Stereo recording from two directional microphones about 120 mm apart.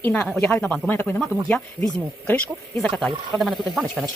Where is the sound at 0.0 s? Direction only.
10° left (ahead or behind).